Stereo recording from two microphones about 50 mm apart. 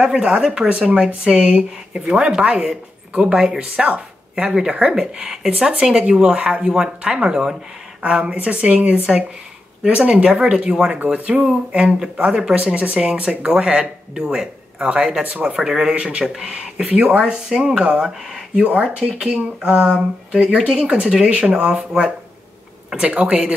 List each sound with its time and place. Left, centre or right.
0.0 s speech: centre
3.2 s speech: right
15.5 s speech: centre
18.6 s speech: right